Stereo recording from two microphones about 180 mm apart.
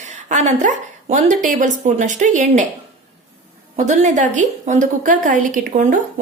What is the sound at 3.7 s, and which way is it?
A woman's voice, 45° right (ahead or behind).